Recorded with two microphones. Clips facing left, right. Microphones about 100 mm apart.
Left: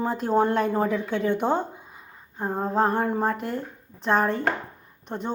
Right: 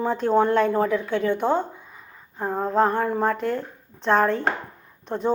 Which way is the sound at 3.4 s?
90° right.